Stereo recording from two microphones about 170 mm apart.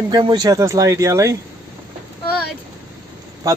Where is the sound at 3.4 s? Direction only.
20° right (ahead or behind).